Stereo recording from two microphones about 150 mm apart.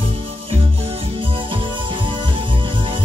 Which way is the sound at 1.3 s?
35° right (ahead or behind).